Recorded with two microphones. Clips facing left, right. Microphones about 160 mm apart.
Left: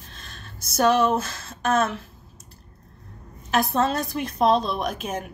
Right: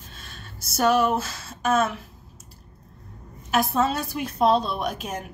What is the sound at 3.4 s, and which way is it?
A woman's voice, 5° right (ahead or behind).